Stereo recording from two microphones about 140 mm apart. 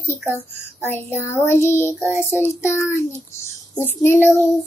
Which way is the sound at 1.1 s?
15° left (ahead or behind).